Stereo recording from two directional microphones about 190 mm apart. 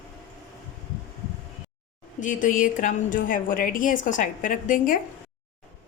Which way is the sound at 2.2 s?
40° left (ahead or behind).